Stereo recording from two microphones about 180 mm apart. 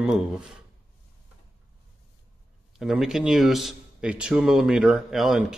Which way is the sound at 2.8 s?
Centre (ahead or behind).